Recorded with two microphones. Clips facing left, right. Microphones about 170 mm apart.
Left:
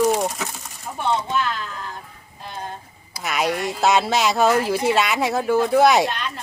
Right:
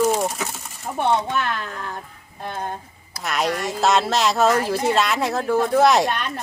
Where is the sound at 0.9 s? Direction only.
55° right (ahead or behind).